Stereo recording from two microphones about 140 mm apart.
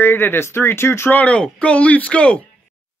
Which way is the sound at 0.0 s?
15° left (ahead or behind).